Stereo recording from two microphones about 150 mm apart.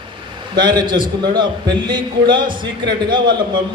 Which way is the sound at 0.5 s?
30° right (ahead or behind).